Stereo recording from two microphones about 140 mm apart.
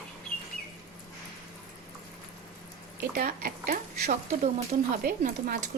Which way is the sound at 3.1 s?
85° right.